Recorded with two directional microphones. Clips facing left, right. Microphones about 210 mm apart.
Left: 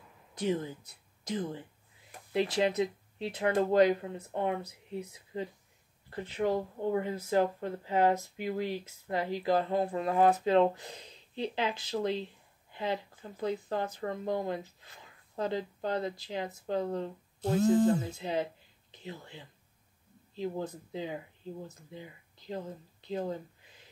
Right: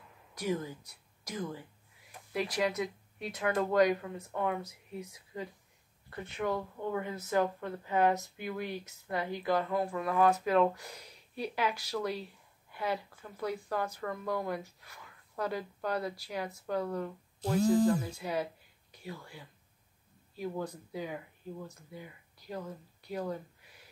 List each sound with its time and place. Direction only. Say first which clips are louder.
0.3 s a woman's voice: left 3 dB; 25° left (ahead or behind)